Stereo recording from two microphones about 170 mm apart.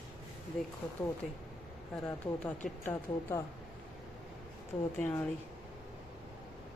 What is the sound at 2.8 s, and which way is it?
Speech, 15° left (ahead or behind).